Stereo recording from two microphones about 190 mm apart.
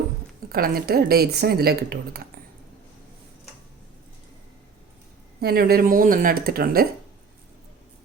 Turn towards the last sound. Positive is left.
turn(degrees=-50)  # may be behind; listen again after turning